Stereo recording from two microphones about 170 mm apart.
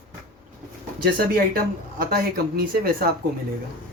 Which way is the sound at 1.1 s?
60° right (ahead or behind).